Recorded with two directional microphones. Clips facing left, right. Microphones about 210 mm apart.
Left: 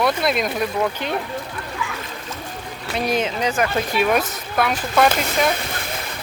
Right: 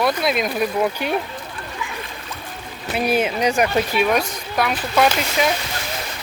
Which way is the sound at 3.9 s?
Centre (ahead or behind).